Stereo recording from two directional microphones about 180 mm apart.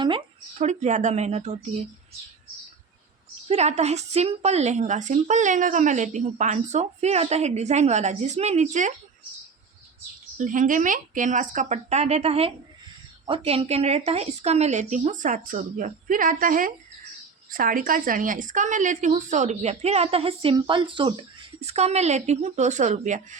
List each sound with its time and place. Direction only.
0.6 s speech: 40° right (ahead or behind)
3.5 s speech: 35° right (ahead or behind)
10.3 s speech: 45° right (ahead or behind)